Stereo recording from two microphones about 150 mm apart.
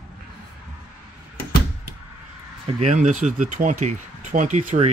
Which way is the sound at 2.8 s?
55° right (ahead or behind).